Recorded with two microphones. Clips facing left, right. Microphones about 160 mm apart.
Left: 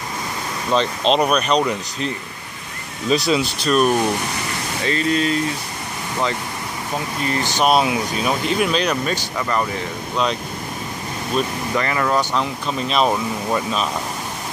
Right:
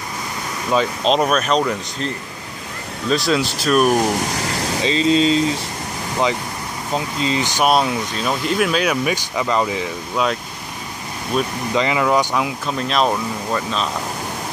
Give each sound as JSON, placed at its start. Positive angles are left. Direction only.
{"t": 0.7, "sound": "speech", "side_deg": -5}
{"t": 3.1, "sound": "speech", "side_deg": 0}
{"t": 3.9, "sound": "speech", "side_deg": -20}
{"t": 7.2, "sound": "speech", "side_deg": -15}
{"t": 7.6, "sound": "speech", "side_deg": 5}
{"t": 11.3, "sound": "speech", "side_deg": -5}
{"t": 12.6, "sound": "speech", "side_deg": 0}